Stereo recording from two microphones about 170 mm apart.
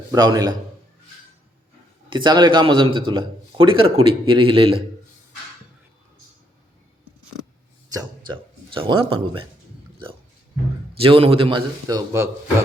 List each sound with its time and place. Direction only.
0.1 s a man's voice: 20° right (ahead or behind)
2.0 s a man's voice: 25° right (ahead or behind)
7.9 s speech: 25° right (ahead or behind)
10.9 s speech: 35° right (ahead or behind)